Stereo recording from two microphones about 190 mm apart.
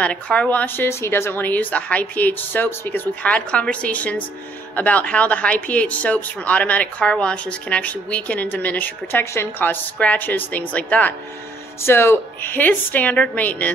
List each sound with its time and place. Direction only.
0.0 s speech: 5° left (ahead or behind)